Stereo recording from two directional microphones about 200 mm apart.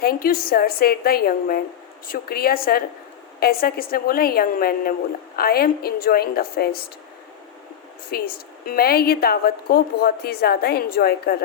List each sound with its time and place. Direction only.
0.0 s a woman's voice: 50° left (ahead or behind)
8.1 s a woman's voice: 50° left (ahead or behind)